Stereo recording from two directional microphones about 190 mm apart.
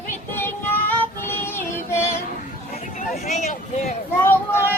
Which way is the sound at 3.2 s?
40° left (ahead or behind).